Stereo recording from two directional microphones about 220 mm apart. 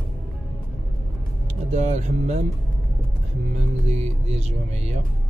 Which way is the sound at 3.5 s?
30° right (ahead or behind).